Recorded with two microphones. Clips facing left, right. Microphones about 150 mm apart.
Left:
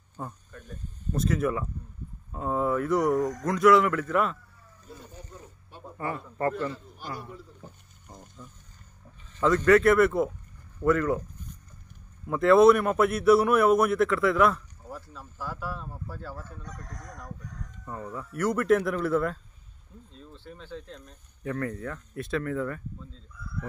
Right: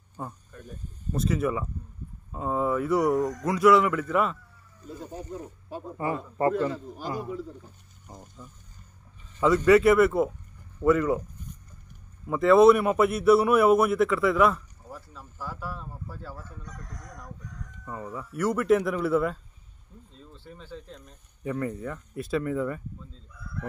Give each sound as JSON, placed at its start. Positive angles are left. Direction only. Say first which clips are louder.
{"t": 0.2, "sound": "a man's voice", "louder": "right 1 dB", "side_deg": -5}
{"t": 5.9, "sound": "speech", "louder": "right 3 dB", "side_deg": -20}
{"t": 8.1, "sound": "water", "louder": "right 1 dB", "side_deg": -5}
{"t": 9.4, "sound": "a man's voice", "louder": "right 1 dB", "side_deg": -5}
{"t": 12.3, "sound": "a man's voice", "louder": "right 1 dB", "side_deg": 0}
{"t": 17.8, "sound": "a man's voice", "louder": "right 1 dB", "side_deg": -5}
{"t": 20.3, "sound": "a man's voice", "louder": "left 1 dB", "side_deg": -5}